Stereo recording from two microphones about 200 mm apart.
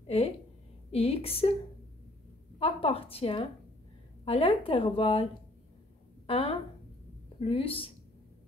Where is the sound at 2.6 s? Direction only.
30° left (ahead or behind).